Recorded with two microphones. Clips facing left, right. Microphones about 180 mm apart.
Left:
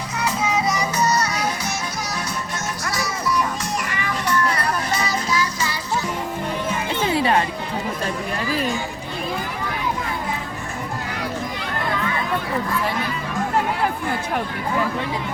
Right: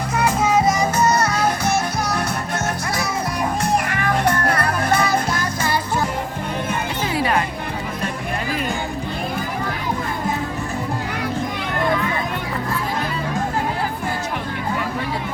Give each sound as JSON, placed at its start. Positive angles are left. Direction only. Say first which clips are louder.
{"t": 0.1, "sound": "music", "louder": "right 5 dB", "side_deg": -50}
{"t": 7.1, "sound": "music", "louder": "left 2 dB", "side_deg": 25}